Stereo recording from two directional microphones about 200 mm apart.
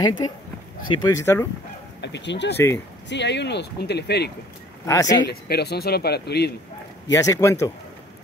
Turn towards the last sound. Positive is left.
turn(degrees=15)  # may be behind; listen again after turning